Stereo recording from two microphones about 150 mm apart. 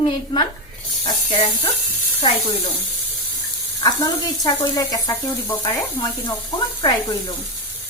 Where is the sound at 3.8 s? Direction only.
25° left (ahead or behind).